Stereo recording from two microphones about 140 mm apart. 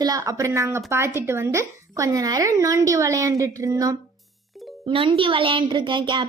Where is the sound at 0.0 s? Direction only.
25° right (ahead or behind).